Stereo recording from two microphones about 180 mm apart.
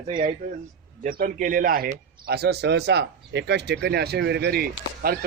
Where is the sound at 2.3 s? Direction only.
65° right (ahead or behind).